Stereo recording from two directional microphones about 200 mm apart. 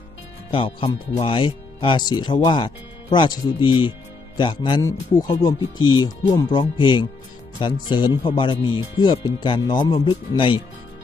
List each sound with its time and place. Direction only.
0.5 s speech: 25° left (ahead or behind)